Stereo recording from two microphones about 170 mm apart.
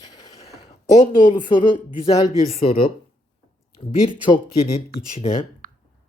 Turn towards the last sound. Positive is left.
turn(degrees=-55)  # may be behind; listen again after turning